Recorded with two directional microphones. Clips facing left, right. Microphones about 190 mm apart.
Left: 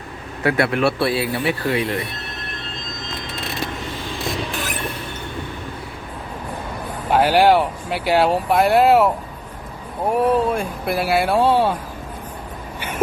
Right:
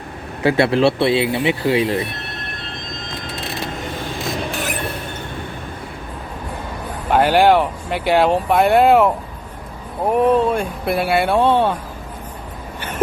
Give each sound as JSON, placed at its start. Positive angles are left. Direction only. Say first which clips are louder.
{"t": 0.4, "sound": "speech", "louder": "right 4 dB", "side_deg": -25}
{"t": 7.1, "sound": "speech", "louder": "right 1 dB", "side_deg": 5}
{"t": 10.1, "sound": "speech", "louder": "right 3 dB", "side_deg": 0}